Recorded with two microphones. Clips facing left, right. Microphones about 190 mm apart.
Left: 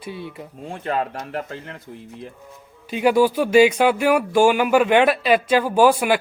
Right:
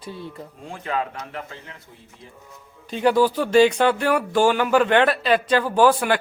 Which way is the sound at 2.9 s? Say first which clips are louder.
Left 2 dB; 10° left (ahead or behind).